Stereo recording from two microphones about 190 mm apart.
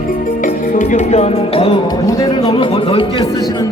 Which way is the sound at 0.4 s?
45° left (ahead or behind).